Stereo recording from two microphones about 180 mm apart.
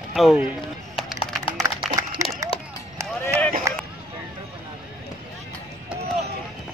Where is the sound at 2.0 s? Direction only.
20° right (ahead or behind).